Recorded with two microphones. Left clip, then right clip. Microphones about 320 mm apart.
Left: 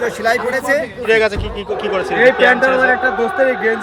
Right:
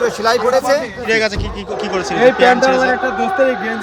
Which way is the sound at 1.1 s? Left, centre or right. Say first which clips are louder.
Left 2 dB; centre.